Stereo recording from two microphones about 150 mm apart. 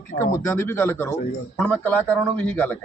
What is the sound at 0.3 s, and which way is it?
A man's voice, 20° left (ahead or behind).